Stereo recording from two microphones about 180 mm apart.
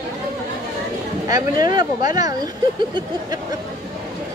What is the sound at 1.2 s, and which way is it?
Speech, 20° right (ahead or behind).